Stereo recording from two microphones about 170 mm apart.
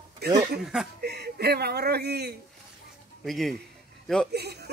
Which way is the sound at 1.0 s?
70° right (ahead or behind).